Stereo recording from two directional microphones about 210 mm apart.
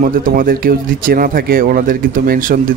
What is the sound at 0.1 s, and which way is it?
Speech, 45° right (ahead or behind).